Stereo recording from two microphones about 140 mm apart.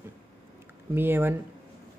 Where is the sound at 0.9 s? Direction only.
15° right (ahead or behind).